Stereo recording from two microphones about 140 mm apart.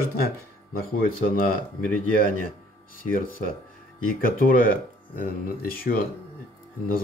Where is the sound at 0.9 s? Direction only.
90° left.